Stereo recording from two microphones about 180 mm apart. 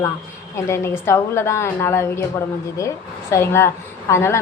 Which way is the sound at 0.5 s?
15° left (ahead or behind).